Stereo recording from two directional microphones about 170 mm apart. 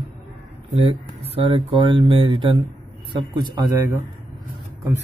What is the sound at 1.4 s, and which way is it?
Speech, 30° right (ahead or behind).